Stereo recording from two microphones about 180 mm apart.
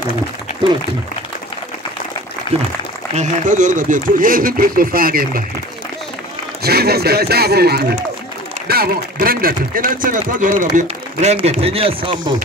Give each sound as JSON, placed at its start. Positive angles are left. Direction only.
{"t": 2.5, "sound": "speech", "side_deg": 25}
{"t": 3.2, "sound": "speech", "side_deg": -45}
{"t": 6.6, "sound": "speech", "side_deg": -60}